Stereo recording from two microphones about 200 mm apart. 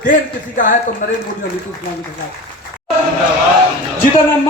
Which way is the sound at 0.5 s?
40° left (ahead or behind).